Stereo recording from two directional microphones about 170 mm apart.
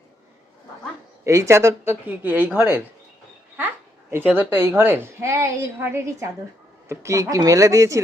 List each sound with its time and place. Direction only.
1.2 s a woman's voice: 20° right (ahead or behind)
4.1 s a woman's voice: 10° right (ahead or behind)